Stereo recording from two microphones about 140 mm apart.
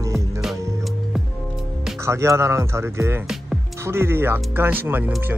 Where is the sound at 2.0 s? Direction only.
20° right (ahead or behind).